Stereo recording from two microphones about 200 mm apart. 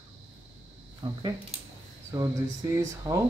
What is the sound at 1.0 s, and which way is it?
Speech, 25° right (ahead or behind).